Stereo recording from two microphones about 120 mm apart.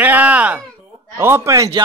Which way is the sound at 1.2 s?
25° right (ahead or behind).